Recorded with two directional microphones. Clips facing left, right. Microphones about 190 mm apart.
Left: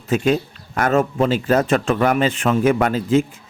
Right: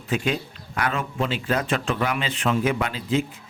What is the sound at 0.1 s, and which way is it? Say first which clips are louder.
A man's voice: left 7 dB; 45° left (ahead or behind).